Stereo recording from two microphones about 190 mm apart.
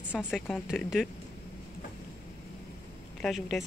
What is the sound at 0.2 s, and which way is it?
Speech, centre (ahead or behind).